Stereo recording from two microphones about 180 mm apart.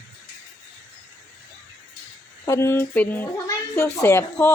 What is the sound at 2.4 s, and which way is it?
A child's voice, 15° left (ahead or behind).